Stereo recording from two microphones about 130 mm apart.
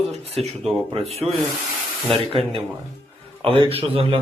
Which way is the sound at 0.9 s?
55° right (ahead or behind).